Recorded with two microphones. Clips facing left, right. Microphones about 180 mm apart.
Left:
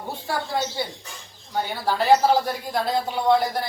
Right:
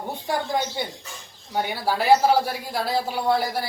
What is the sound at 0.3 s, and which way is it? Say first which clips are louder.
Speech: right 2 dB; 15° right (ahead or behind).